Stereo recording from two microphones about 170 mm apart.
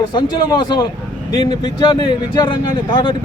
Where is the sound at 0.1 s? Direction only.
25° left (ahead or behind).